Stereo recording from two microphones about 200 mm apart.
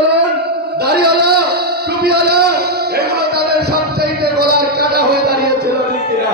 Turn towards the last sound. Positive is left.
turn(degrees=-55)  # may be behind; listen again after turning